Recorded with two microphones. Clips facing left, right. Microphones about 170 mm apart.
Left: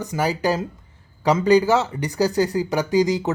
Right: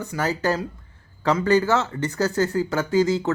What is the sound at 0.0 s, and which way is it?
Speech, 15° left (ahead or behind).